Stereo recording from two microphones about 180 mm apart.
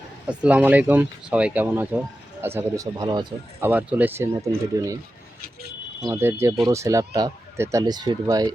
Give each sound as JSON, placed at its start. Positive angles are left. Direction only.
{"t": 0.3, "sound": "speech", "side_deg": -5}
{"t": 3.6, "sound": "speech", "side_deg": -10}
{"t": 6.0, "sound": "speech", "side_deg": -15}